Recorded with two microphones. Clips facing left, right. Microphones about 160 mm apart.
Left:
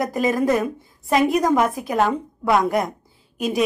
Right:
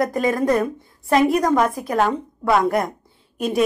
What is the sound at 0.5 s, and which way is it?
A woman's voice, centre (ahead or behind).